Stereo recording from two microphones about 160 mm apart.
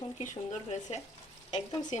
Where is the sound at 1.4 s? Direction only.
45° left (ahead or behind).